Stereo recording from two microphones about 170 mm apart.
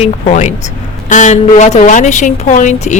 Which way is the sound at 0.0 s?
40° left (ahead or behind).